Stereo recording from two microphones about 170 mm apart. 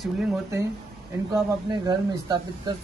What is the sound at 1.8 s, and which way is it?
Speech, 25° right (ahead or behind).